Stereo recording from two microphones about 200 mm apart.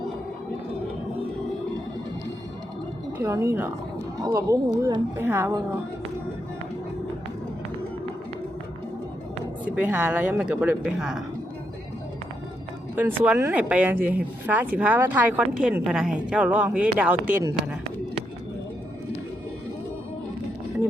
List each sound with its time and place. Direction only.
3.2 s speech: 15° right (ahead or behind)
9.6 s speech: 5° right (ahead or behind)
13.0 s speech: 10° right (ahead or behind)